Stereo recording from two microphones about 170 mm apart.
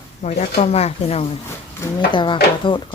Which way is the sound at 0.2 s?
45° left (ahead or behind).